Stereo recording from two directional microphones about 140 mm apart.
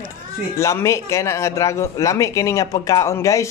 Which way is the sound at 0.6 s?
20° left (ahead or behind).